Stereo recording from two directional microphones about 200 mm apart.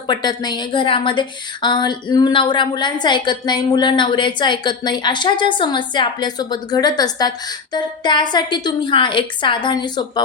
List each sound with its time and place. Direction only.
0.1 s a woman's voice: 20° left (ahead or behind)